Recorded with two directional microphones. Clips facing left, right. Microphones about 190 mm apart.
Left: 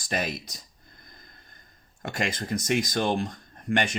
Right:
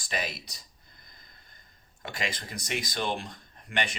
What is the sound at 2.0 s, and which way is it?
Speech, 45° left (ahead or behind).